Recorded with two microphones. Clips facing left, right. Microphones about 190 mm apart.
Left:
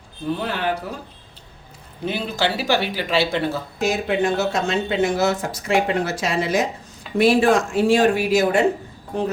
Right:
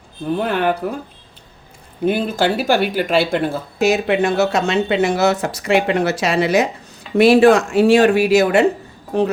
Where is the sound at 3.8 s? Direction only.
75° right (ahead or behind).